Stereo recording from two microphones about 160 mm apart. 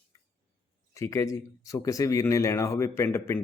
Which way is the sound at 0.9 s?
20° left (ahead or behind).